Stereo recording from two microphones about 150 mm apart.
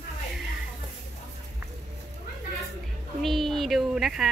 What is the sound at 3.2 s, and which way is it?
Speech, centre (ahead or behind).